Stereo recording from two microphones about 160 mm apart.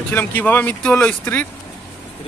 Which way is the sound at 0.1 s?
10° left (ahead or behind).